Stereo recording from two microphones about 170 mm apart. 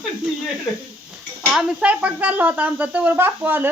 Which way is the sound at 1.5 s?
5° right (ahead or behind).